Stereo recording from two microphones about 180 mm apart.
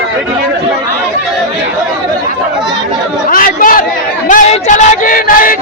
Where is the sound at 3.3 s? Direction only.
50° left (ahead or behind).